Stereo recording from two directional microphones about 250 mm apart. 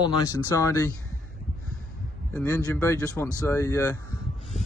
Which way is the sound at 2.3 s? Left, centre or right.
Centre.